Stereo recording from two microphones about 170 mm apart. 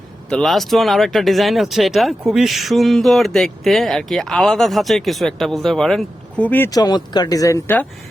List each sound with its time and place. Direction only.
0.3 s speech: centre (ahead or behind)
6.7 s speech: 25° left (ahead or behind)